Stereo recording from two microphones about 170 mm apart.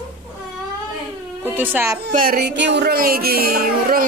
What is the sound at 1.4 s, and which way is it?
Speech, 10° right (ahead or behind).